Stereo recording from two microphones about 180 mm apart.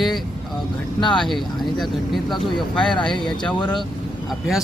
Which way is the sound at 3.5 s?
25° left (ahead or behind).